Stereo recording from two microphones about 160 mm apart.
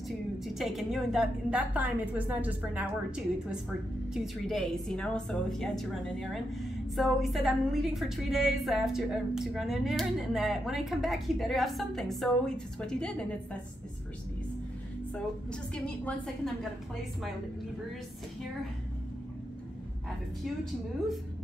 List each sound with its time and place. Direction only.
0.6 s a woman's voice: centre (ahead or behind)
4.1 s a woman's voice: centre (ahead or behind)
15.7 s a woman's voice: 5° left (ahead or behind)